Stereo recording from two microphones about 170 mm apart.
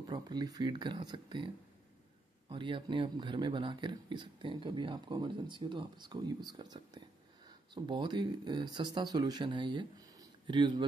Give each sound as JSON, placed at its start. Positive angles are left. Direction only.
{"t": 0.1, "sound": "speech", "side_deg": -25}
{"t": 2.5, "sound": "speech", "side_deg": -30}